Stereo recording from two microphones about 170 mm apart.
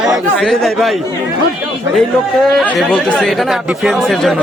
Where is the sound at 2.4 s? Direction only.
Centre (ahead or behind).